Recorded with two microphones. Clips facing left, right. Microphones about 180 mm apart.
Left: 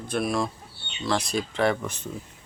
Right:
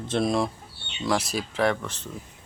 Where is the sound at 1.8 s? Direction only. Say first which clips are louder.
Left 3 dB; 10° left (ahead or behind).